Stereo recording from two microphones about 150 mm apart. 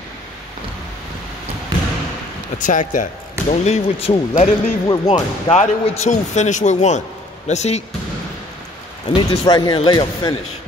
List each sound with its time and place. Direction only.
2.6 s speech: 60° left (ahead or behind)
9.1 s speech: 30° left (ahead or behind)